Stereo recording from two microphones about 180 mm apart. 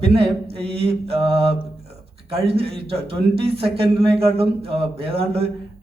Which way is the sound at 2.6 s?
30° right (ahead or behind).